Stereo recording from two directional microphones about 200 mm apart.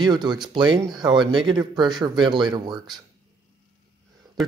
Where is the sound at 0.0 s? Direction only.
20° right (ahead or behind).